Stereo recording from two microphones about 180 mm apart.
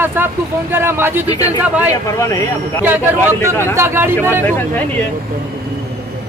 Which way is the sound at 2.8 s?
10° right (ahead or behind).